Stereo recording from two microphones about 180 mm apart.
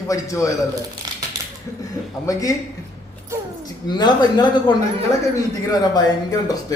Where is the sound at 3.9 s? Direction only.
25° left (ahead or behind).